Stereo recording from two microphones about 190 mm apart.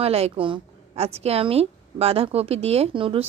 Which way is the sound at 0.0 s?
30° right (ahead or behind).